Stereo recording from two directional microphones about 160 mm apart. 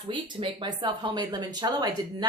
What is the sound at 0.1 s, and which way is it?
A woman's voice, 30° right (ahead or behind).